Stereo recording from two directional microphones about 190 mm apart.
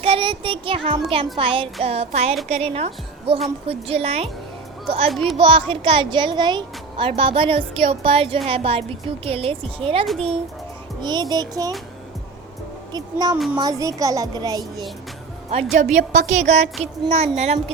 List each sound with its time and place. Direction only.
0.0 s a woman's voice: 30° right (ahead or behind)
12.9 s speech: 20° right (ahead or behind)
13.3 s a child's voice: 10° right (ahead or behind)
15.7 s a woman's voice: 40° right (ahead or behind)